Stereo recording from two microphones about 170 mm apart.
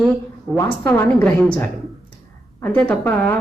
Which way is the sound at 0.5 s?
15° left (ahead or behind).